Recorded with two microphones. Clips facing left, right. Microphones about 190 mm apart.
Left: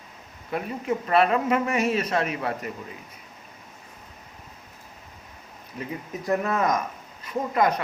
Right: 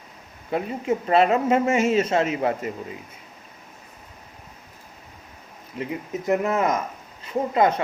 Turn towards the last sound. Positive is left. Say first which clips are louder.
# right 3 dB
turn(degrees=-25)  # may be behind; listen again after turning